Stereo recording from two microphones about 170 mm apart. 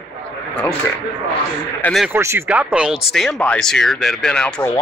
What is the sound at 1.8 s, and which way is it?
Speech, centre (ahead or behind).